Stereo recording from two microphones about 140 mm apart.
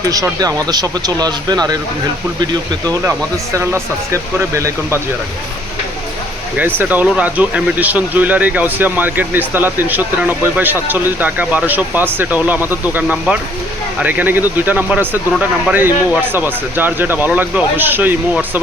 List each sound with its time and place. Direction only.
0.0 s speech: 25° right (ahead or behind)
6.6 s speech: 15° right (ahead or behind)